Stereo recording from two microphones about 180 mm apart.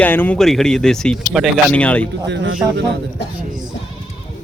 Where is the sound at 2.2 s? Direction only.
70° right (ahead or behind).